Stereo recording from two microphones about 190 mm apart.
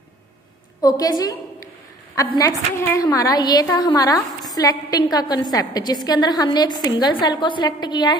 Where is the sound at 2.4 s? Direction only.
15° left (ahead or behind).